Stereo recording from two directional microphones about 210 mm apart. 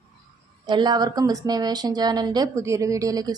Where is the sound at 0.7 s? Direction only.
20° right (ahead or behind).